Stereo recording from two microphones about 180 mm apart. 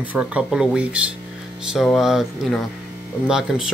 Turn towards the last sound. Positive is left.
turn(degrees=-5)  # may be behind; listen again after turning